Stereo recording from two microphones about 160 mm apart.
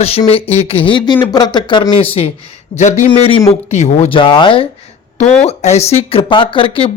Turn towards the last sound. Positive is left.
turn(degrees=35)  # may be behind; listen again after turning